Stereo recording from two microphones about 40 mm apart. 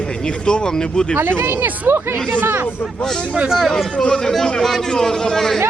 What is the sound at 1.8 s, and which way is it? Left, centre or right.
Speech, right.